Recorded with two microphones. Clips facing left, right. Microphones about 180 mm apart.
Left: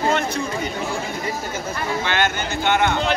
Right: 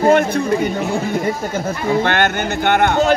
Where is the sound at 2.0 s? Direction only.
55° right (ahead or behind).